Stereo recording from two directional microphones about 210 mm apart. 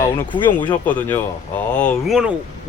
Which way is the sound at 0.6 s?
5° left (ahead or behind).